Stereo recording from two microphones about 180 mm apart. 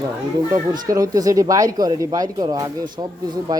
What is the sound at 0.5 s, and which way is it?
Speech, 20° right (ahead or behind).